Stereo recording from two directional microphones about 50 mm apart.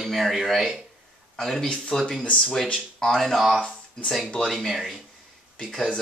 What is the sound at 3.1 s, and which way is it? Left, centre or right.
Speech, centre.